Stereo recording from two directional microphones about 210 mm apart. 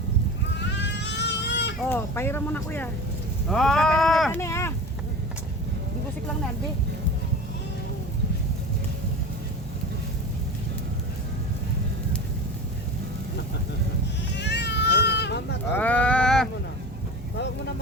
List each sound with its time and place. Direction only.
0.8 s goat: 55° left (ahead or behind)
1.9 s speech: 10° left (ahead or behind)
4.4 s speech: 15° left (ahead or behind)
14.3 s cat: 55° left (ahead or behind)
15.7 s sheep: 5° left (ahead or behind)